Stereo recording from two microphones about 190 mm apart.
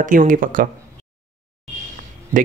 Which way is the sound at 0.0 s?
45° right (ahead or behind).